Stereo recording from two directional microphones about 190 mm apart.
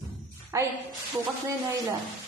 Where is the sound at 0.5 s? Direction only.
15° right (ahead or behind).